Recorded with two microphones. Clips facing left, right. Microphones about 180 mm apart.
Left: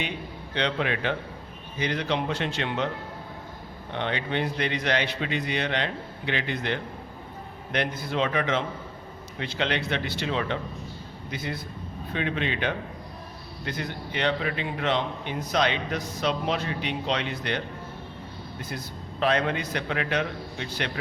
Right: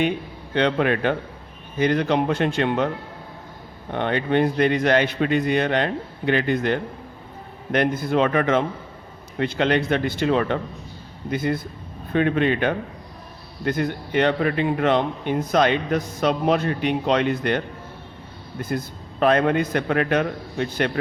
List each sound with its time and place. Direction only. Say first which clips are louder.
0.5 s a man's voice: right 7 dB; 50° right (ahead or behind)
3.9 s a man's voice: right 8 dB; 50° right (ahead or behind)
18.6 s a man's voice: right 11 dB; 50° right (ahead or behind)